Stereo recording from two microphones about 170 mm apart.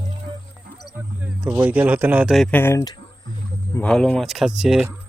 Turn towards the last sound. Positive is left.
turn(degrees=-5)  # may be behind; listen again after turning